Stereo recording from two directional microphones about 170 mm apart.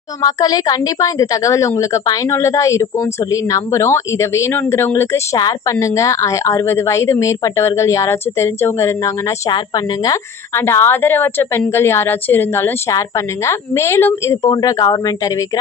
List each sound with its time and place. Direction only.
0.2 s a woman's voice: 20° left (ahead or behind)